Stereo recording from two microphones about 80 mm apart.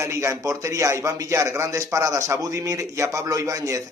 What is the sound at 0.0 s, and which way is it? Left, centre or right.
Speech, right.